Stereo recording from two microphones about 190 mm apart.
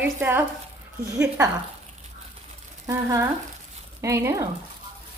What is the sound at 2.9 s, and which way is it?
A woman's voice, 15° right (ahead or behind).